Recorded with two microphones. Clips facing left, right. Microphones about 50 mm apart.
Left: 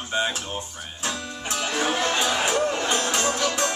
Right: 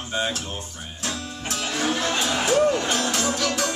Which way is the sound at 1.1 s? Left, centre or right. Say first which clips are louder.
Left 1 dB; centre.